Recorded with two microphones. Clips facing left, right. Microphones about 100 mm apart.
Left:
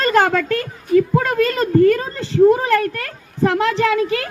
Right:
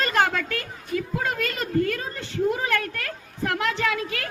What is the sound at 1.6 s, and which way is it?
Speech, 40° left (ahead or behind).